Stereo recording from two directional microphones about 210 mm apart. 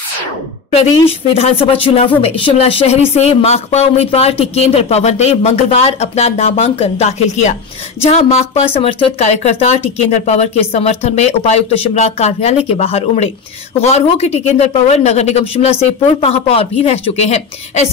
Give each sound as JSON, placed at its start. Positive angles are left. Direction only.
{"t": 0.7, "sound": "speech", "side_deg": 30}